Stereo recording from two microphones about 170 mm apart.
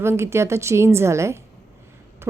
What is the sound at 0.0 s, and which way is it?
A woman's voice, 15° right (ahead or behind).